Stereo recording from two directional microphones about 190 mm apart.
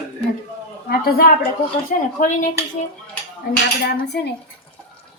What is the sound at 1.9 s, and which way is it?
Speech, 45° left (ahead or behind).